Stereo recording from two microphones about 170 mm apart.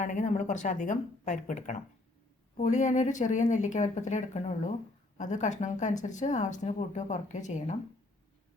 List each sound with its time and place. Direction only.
0.0 s speech: 45° left (ahead or behind)